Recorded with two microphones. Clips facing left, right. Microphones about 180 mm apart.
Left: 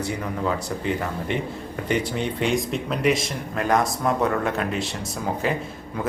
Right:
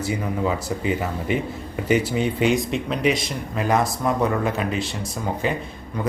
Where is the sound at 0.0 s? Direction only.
5° right (ahead or behind).